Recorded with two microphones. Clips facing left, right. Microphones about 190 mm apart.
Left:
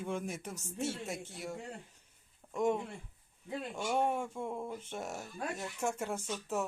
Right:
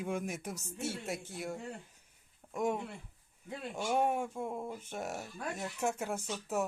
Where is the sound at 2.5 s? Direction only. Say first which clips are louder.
Left 2 dB; 5° right (ahead or behind).